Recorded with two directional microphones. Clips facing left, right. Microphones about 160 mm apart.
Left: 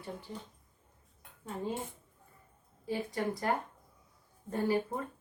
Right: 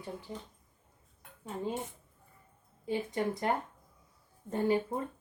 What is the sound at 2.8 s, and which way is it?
A woman's voice, 20° right (ahead or behind).